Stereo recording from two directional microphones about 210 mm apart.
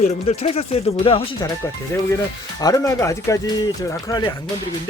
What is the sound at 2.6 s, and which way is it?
Speech, 15° left (ahead or behind).